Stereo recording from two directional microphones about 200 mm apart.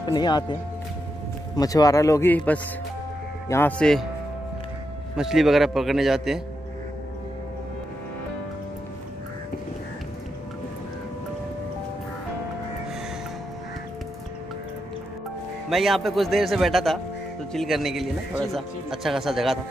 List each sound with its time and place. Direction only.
0.0 s a man's voice: 20° left (ahead or behind); by 4.1 s 5° left (ahead or behind)
5.1 s speech: centre (ahead or behind)
15.7 s speech: centre (ahead or behind)